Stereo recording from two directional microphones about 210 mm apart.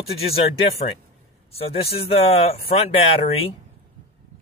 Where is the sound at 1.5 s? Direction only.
30° left (ahead or behind).